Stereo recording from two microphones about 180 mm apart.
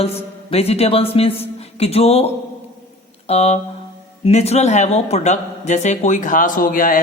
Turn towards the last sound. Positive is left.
turn(degrees=50)  # may be behind; listen again after turning